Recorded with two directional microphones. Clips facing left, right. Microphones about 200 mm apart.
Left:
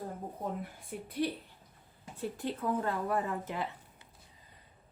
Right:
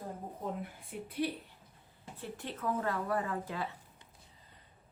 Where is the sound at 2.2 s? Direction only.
35° left (ahead or behind).